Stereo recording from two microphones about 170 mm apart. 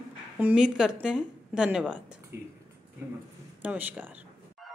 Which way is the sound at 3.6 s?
10° right (ahead or behind).